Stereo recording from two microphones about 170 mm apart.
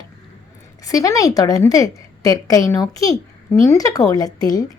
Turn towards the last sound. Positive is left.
turn(degrees=20)  # may be behind; listen again after turning